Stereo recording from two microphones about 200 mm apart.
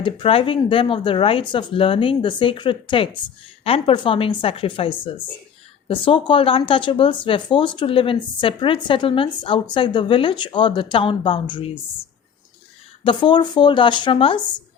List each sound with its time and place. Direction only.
0.0 s speech: 25° left (ahead or behind)
13.1 s speech: 25° left (ahead or behind)